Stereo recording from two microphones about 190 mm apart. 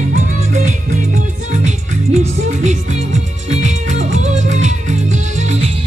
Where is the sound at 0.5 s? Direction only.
40° right (ahead or behind).